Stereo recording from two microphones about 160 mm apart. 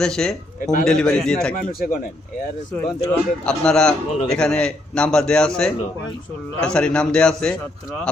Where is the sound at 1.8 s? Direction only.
65° left (ahead or behind).